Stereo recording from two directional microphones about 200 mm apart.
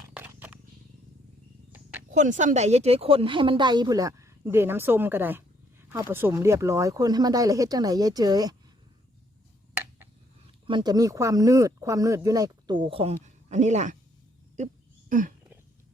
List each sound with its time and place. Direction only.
0.2 s purr: 10° right (ahead or behind)
2.0 s speech: 40° right (ahead or behind); by 8.5 s 20° right (ahead or behind)
10.7 s speech: 20° right (ahead or behind); by 13.9 s 35° right (ahead or behind)
15.1 s a sound: 40° right (ahead or behind)